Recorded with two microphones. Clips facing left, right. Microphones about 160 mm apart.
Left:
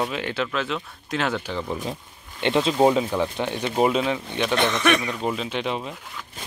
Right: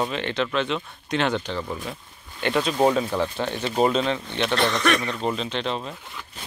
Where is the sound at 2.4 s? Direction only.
25° left (ahead or behind).